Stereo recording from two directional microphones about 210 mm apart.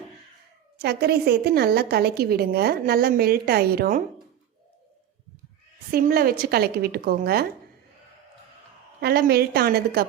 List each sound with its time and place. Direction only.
0.8 s a woman's voice: 50° right (ahead or behind)
5.9 s a woman's voice: 45° right (ahead or behind)
9.0 s a woman's voice: 50° right (ahead or behind)